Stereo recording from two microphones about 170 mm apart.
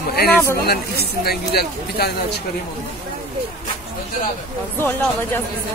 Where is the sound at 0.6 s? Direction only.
70° left (ahead or behind).